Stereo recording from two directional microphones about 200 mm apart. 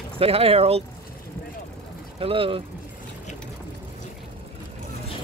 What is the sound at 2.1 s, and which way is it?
Speech, 25° right (ahead or behind).